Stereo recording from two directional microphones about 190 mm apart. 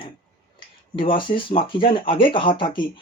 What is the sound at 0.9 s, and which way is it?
Speech, 25° left (ahead or behind).